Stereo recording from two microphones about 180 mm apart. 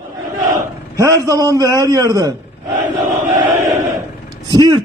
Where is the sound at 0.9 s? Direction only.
20° right (ahead or behind).